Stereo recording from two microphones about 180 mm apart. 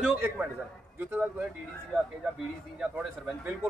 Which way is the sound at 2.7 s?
10° right (ahead or behind).